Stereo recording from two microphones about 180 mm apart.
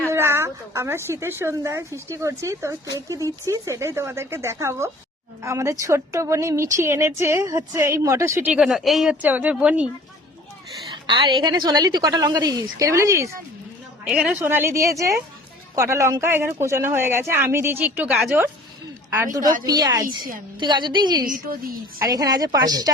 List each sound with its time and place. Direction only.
0.1 s a woman's voice: 15° right (ahead or behind)
10.9 s a woman's voice: 25° right (ahead or behind)
14.0 s a woman's voice: 5° right (ahead or behind); by 21.2 s 25° right (ahead or behind)
21.2 s a woman's voice: 50° right (ahead or behind)
22.0 s a woman's voice: 20° right (ahead or behind)